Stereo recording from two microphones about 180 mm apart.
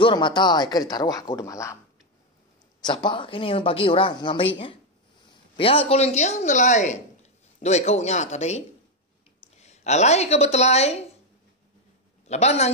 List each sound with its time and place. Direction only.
0.0 s speech: 25° left (ahead or behind)
2.8 s a man's voice: 25° left (ahead or behind)
12.3 s speech: 35° left (ahead or behind)